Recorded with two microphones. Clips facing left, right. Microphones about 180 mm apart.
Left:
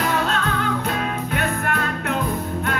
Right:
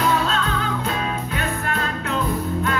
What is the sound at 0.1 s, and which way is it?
Music, 55° left (ahead or behind).